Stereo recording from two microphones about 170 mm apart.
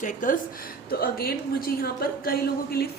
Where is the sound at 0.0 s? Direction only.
50° left (ahead or behind).